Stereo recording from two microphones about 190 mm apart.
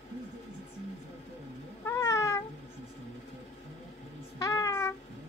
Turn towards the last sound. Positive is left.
turn(degrees=15)  # may be behind; listen again after turning